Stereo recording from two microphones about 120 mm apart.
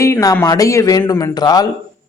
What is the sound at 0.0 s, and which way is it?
Speech, 25° left (ahead or behind).